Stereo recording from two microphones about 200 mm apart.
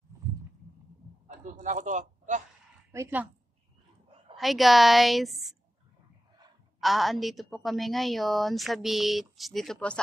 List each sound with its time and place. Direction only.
0.1 s a sound: 15° right (ahead or behind)
1.2 s a man's voice: 35° right (ahead or behind)
2.9 s a woman's voice: 10° right (ahead or behind)
4.4 s a woman's voice: centre (ahead or behind)
6.8 s a woman's voice: centre (ahead or behind)